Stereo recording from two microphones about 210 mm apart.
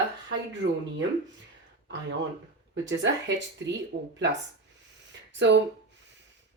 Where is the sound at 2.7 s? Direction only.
60° right (ahead or behind).